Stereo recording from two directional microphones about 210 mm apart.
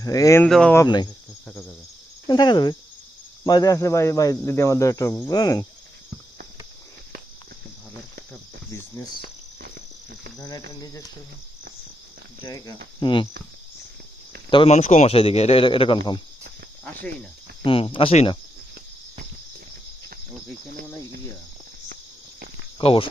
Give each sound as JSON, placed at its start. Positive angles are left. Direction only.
{"t": 0.0, "sound": "speech", "side_deg": 15}
{"t": 0.9, "sound": "a man's voice", "side_deg": 20}
{"t": 2.2, "sound": "a man's voice", "side_deg": 20}
{"t": 8.7, "sound": "speech", "side_deg": 15}
{"t": 9.2, "sound": "insect", "side_deg": -45}
{"t": 10.3, "sound": "speech", "side_deg": 15}
{"t": 12.4, "sound": "a man's voice", "side_deg": 20}
{"t": 14.5, "sound": "a man's voice", "side_deg": 30}
{"t": 17.6, "sound": "a man's voice", "side_deg": 25}
{"t": 22.8, "sound": "a man's voice", "side_deg": 25}